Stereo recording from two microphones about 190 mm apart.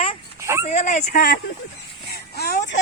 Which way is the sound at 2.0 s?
60° left (ahead or behind).